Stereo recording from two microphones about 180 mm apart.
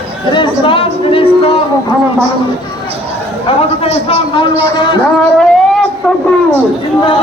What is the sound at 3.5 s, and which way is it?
A man's voice, 30° left (ahead or behind).